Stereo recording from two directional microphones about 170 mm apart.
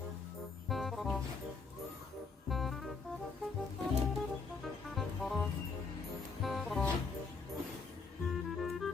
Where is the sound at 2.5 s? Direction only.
Centre (ahead or behind).